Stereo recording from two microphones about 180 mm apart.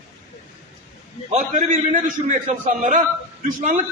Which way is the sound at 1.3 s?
45° right (ahead or behind).